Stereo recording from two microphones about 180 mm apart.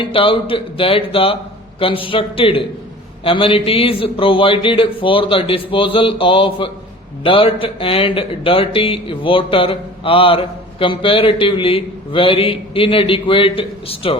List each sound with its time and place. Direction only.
0.0 s speech: 30° left (ahead or behind)